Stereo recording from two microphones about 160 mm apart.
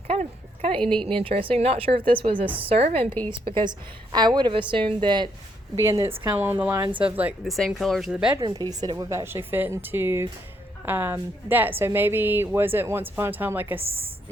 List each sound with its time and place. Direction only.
0.1 s a woman's voice: 40° right (ahead or behind)
3.1 s a woman's voice: 15° left (ahead or behind)
3.4 s a woman's voice: 30° right (ahead or behind)
5.7 s a woman's voice: 20° right (ahead or behind)
7.4 s speech: centre (ahead or behind)
8.4 s a woman's voice: 30° right (ahead or behind); by 13.8 s 10° right (ahead or behind)
13.8 s a woman's voice: 35° right (ahead or behind)